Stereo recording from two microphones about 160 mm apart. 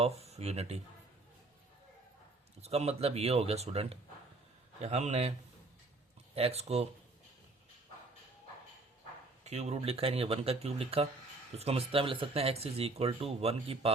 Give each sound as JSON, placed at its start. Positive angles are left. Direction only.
{"t": 0.0, "sound": "speech", "side_deg": -40}
{"t": 2.6, "sound": "a man's voice", "side_deg": -40}
{"t": 6.3, "sound": "speech", "side_deg": -40}
{"t": 9.4, "sound": "speech", "side_deg": -40}